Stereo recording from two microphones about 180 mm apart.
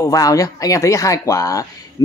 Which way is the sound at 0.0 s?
20° left (ahead or behind).